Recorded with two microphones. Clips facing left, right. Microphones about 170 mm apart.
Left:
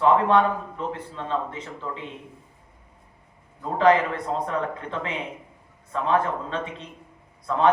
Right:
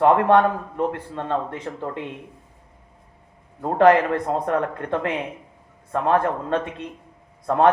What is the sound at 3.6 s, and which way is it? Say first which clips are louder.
A man's voice: right 4 dB; 55° right (ahead or behind).